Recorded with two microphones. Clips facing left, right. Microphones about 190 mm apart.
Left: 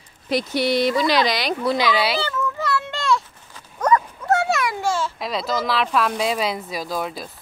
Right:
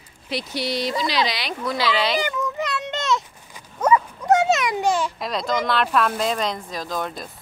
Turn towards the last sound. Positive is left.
turn(degrees=5)  # may be behind; listen again after turning